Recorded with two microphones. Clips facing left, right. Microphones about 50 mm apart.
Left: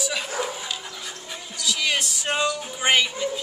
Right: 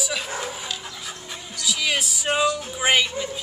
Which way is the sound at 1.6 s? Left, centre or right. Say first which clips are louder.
Even; centre.